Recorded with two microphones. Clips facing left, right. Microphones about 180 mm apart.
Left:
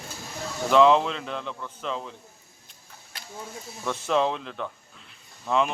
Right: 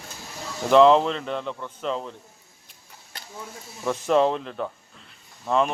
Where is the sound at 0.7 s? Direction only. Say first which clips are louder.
Right 3 dB; centre (ahead or behind).